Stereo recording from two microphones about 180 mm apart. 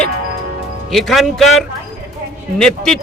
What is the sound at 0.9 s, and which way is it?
A man's voice, centre (ahead or behind).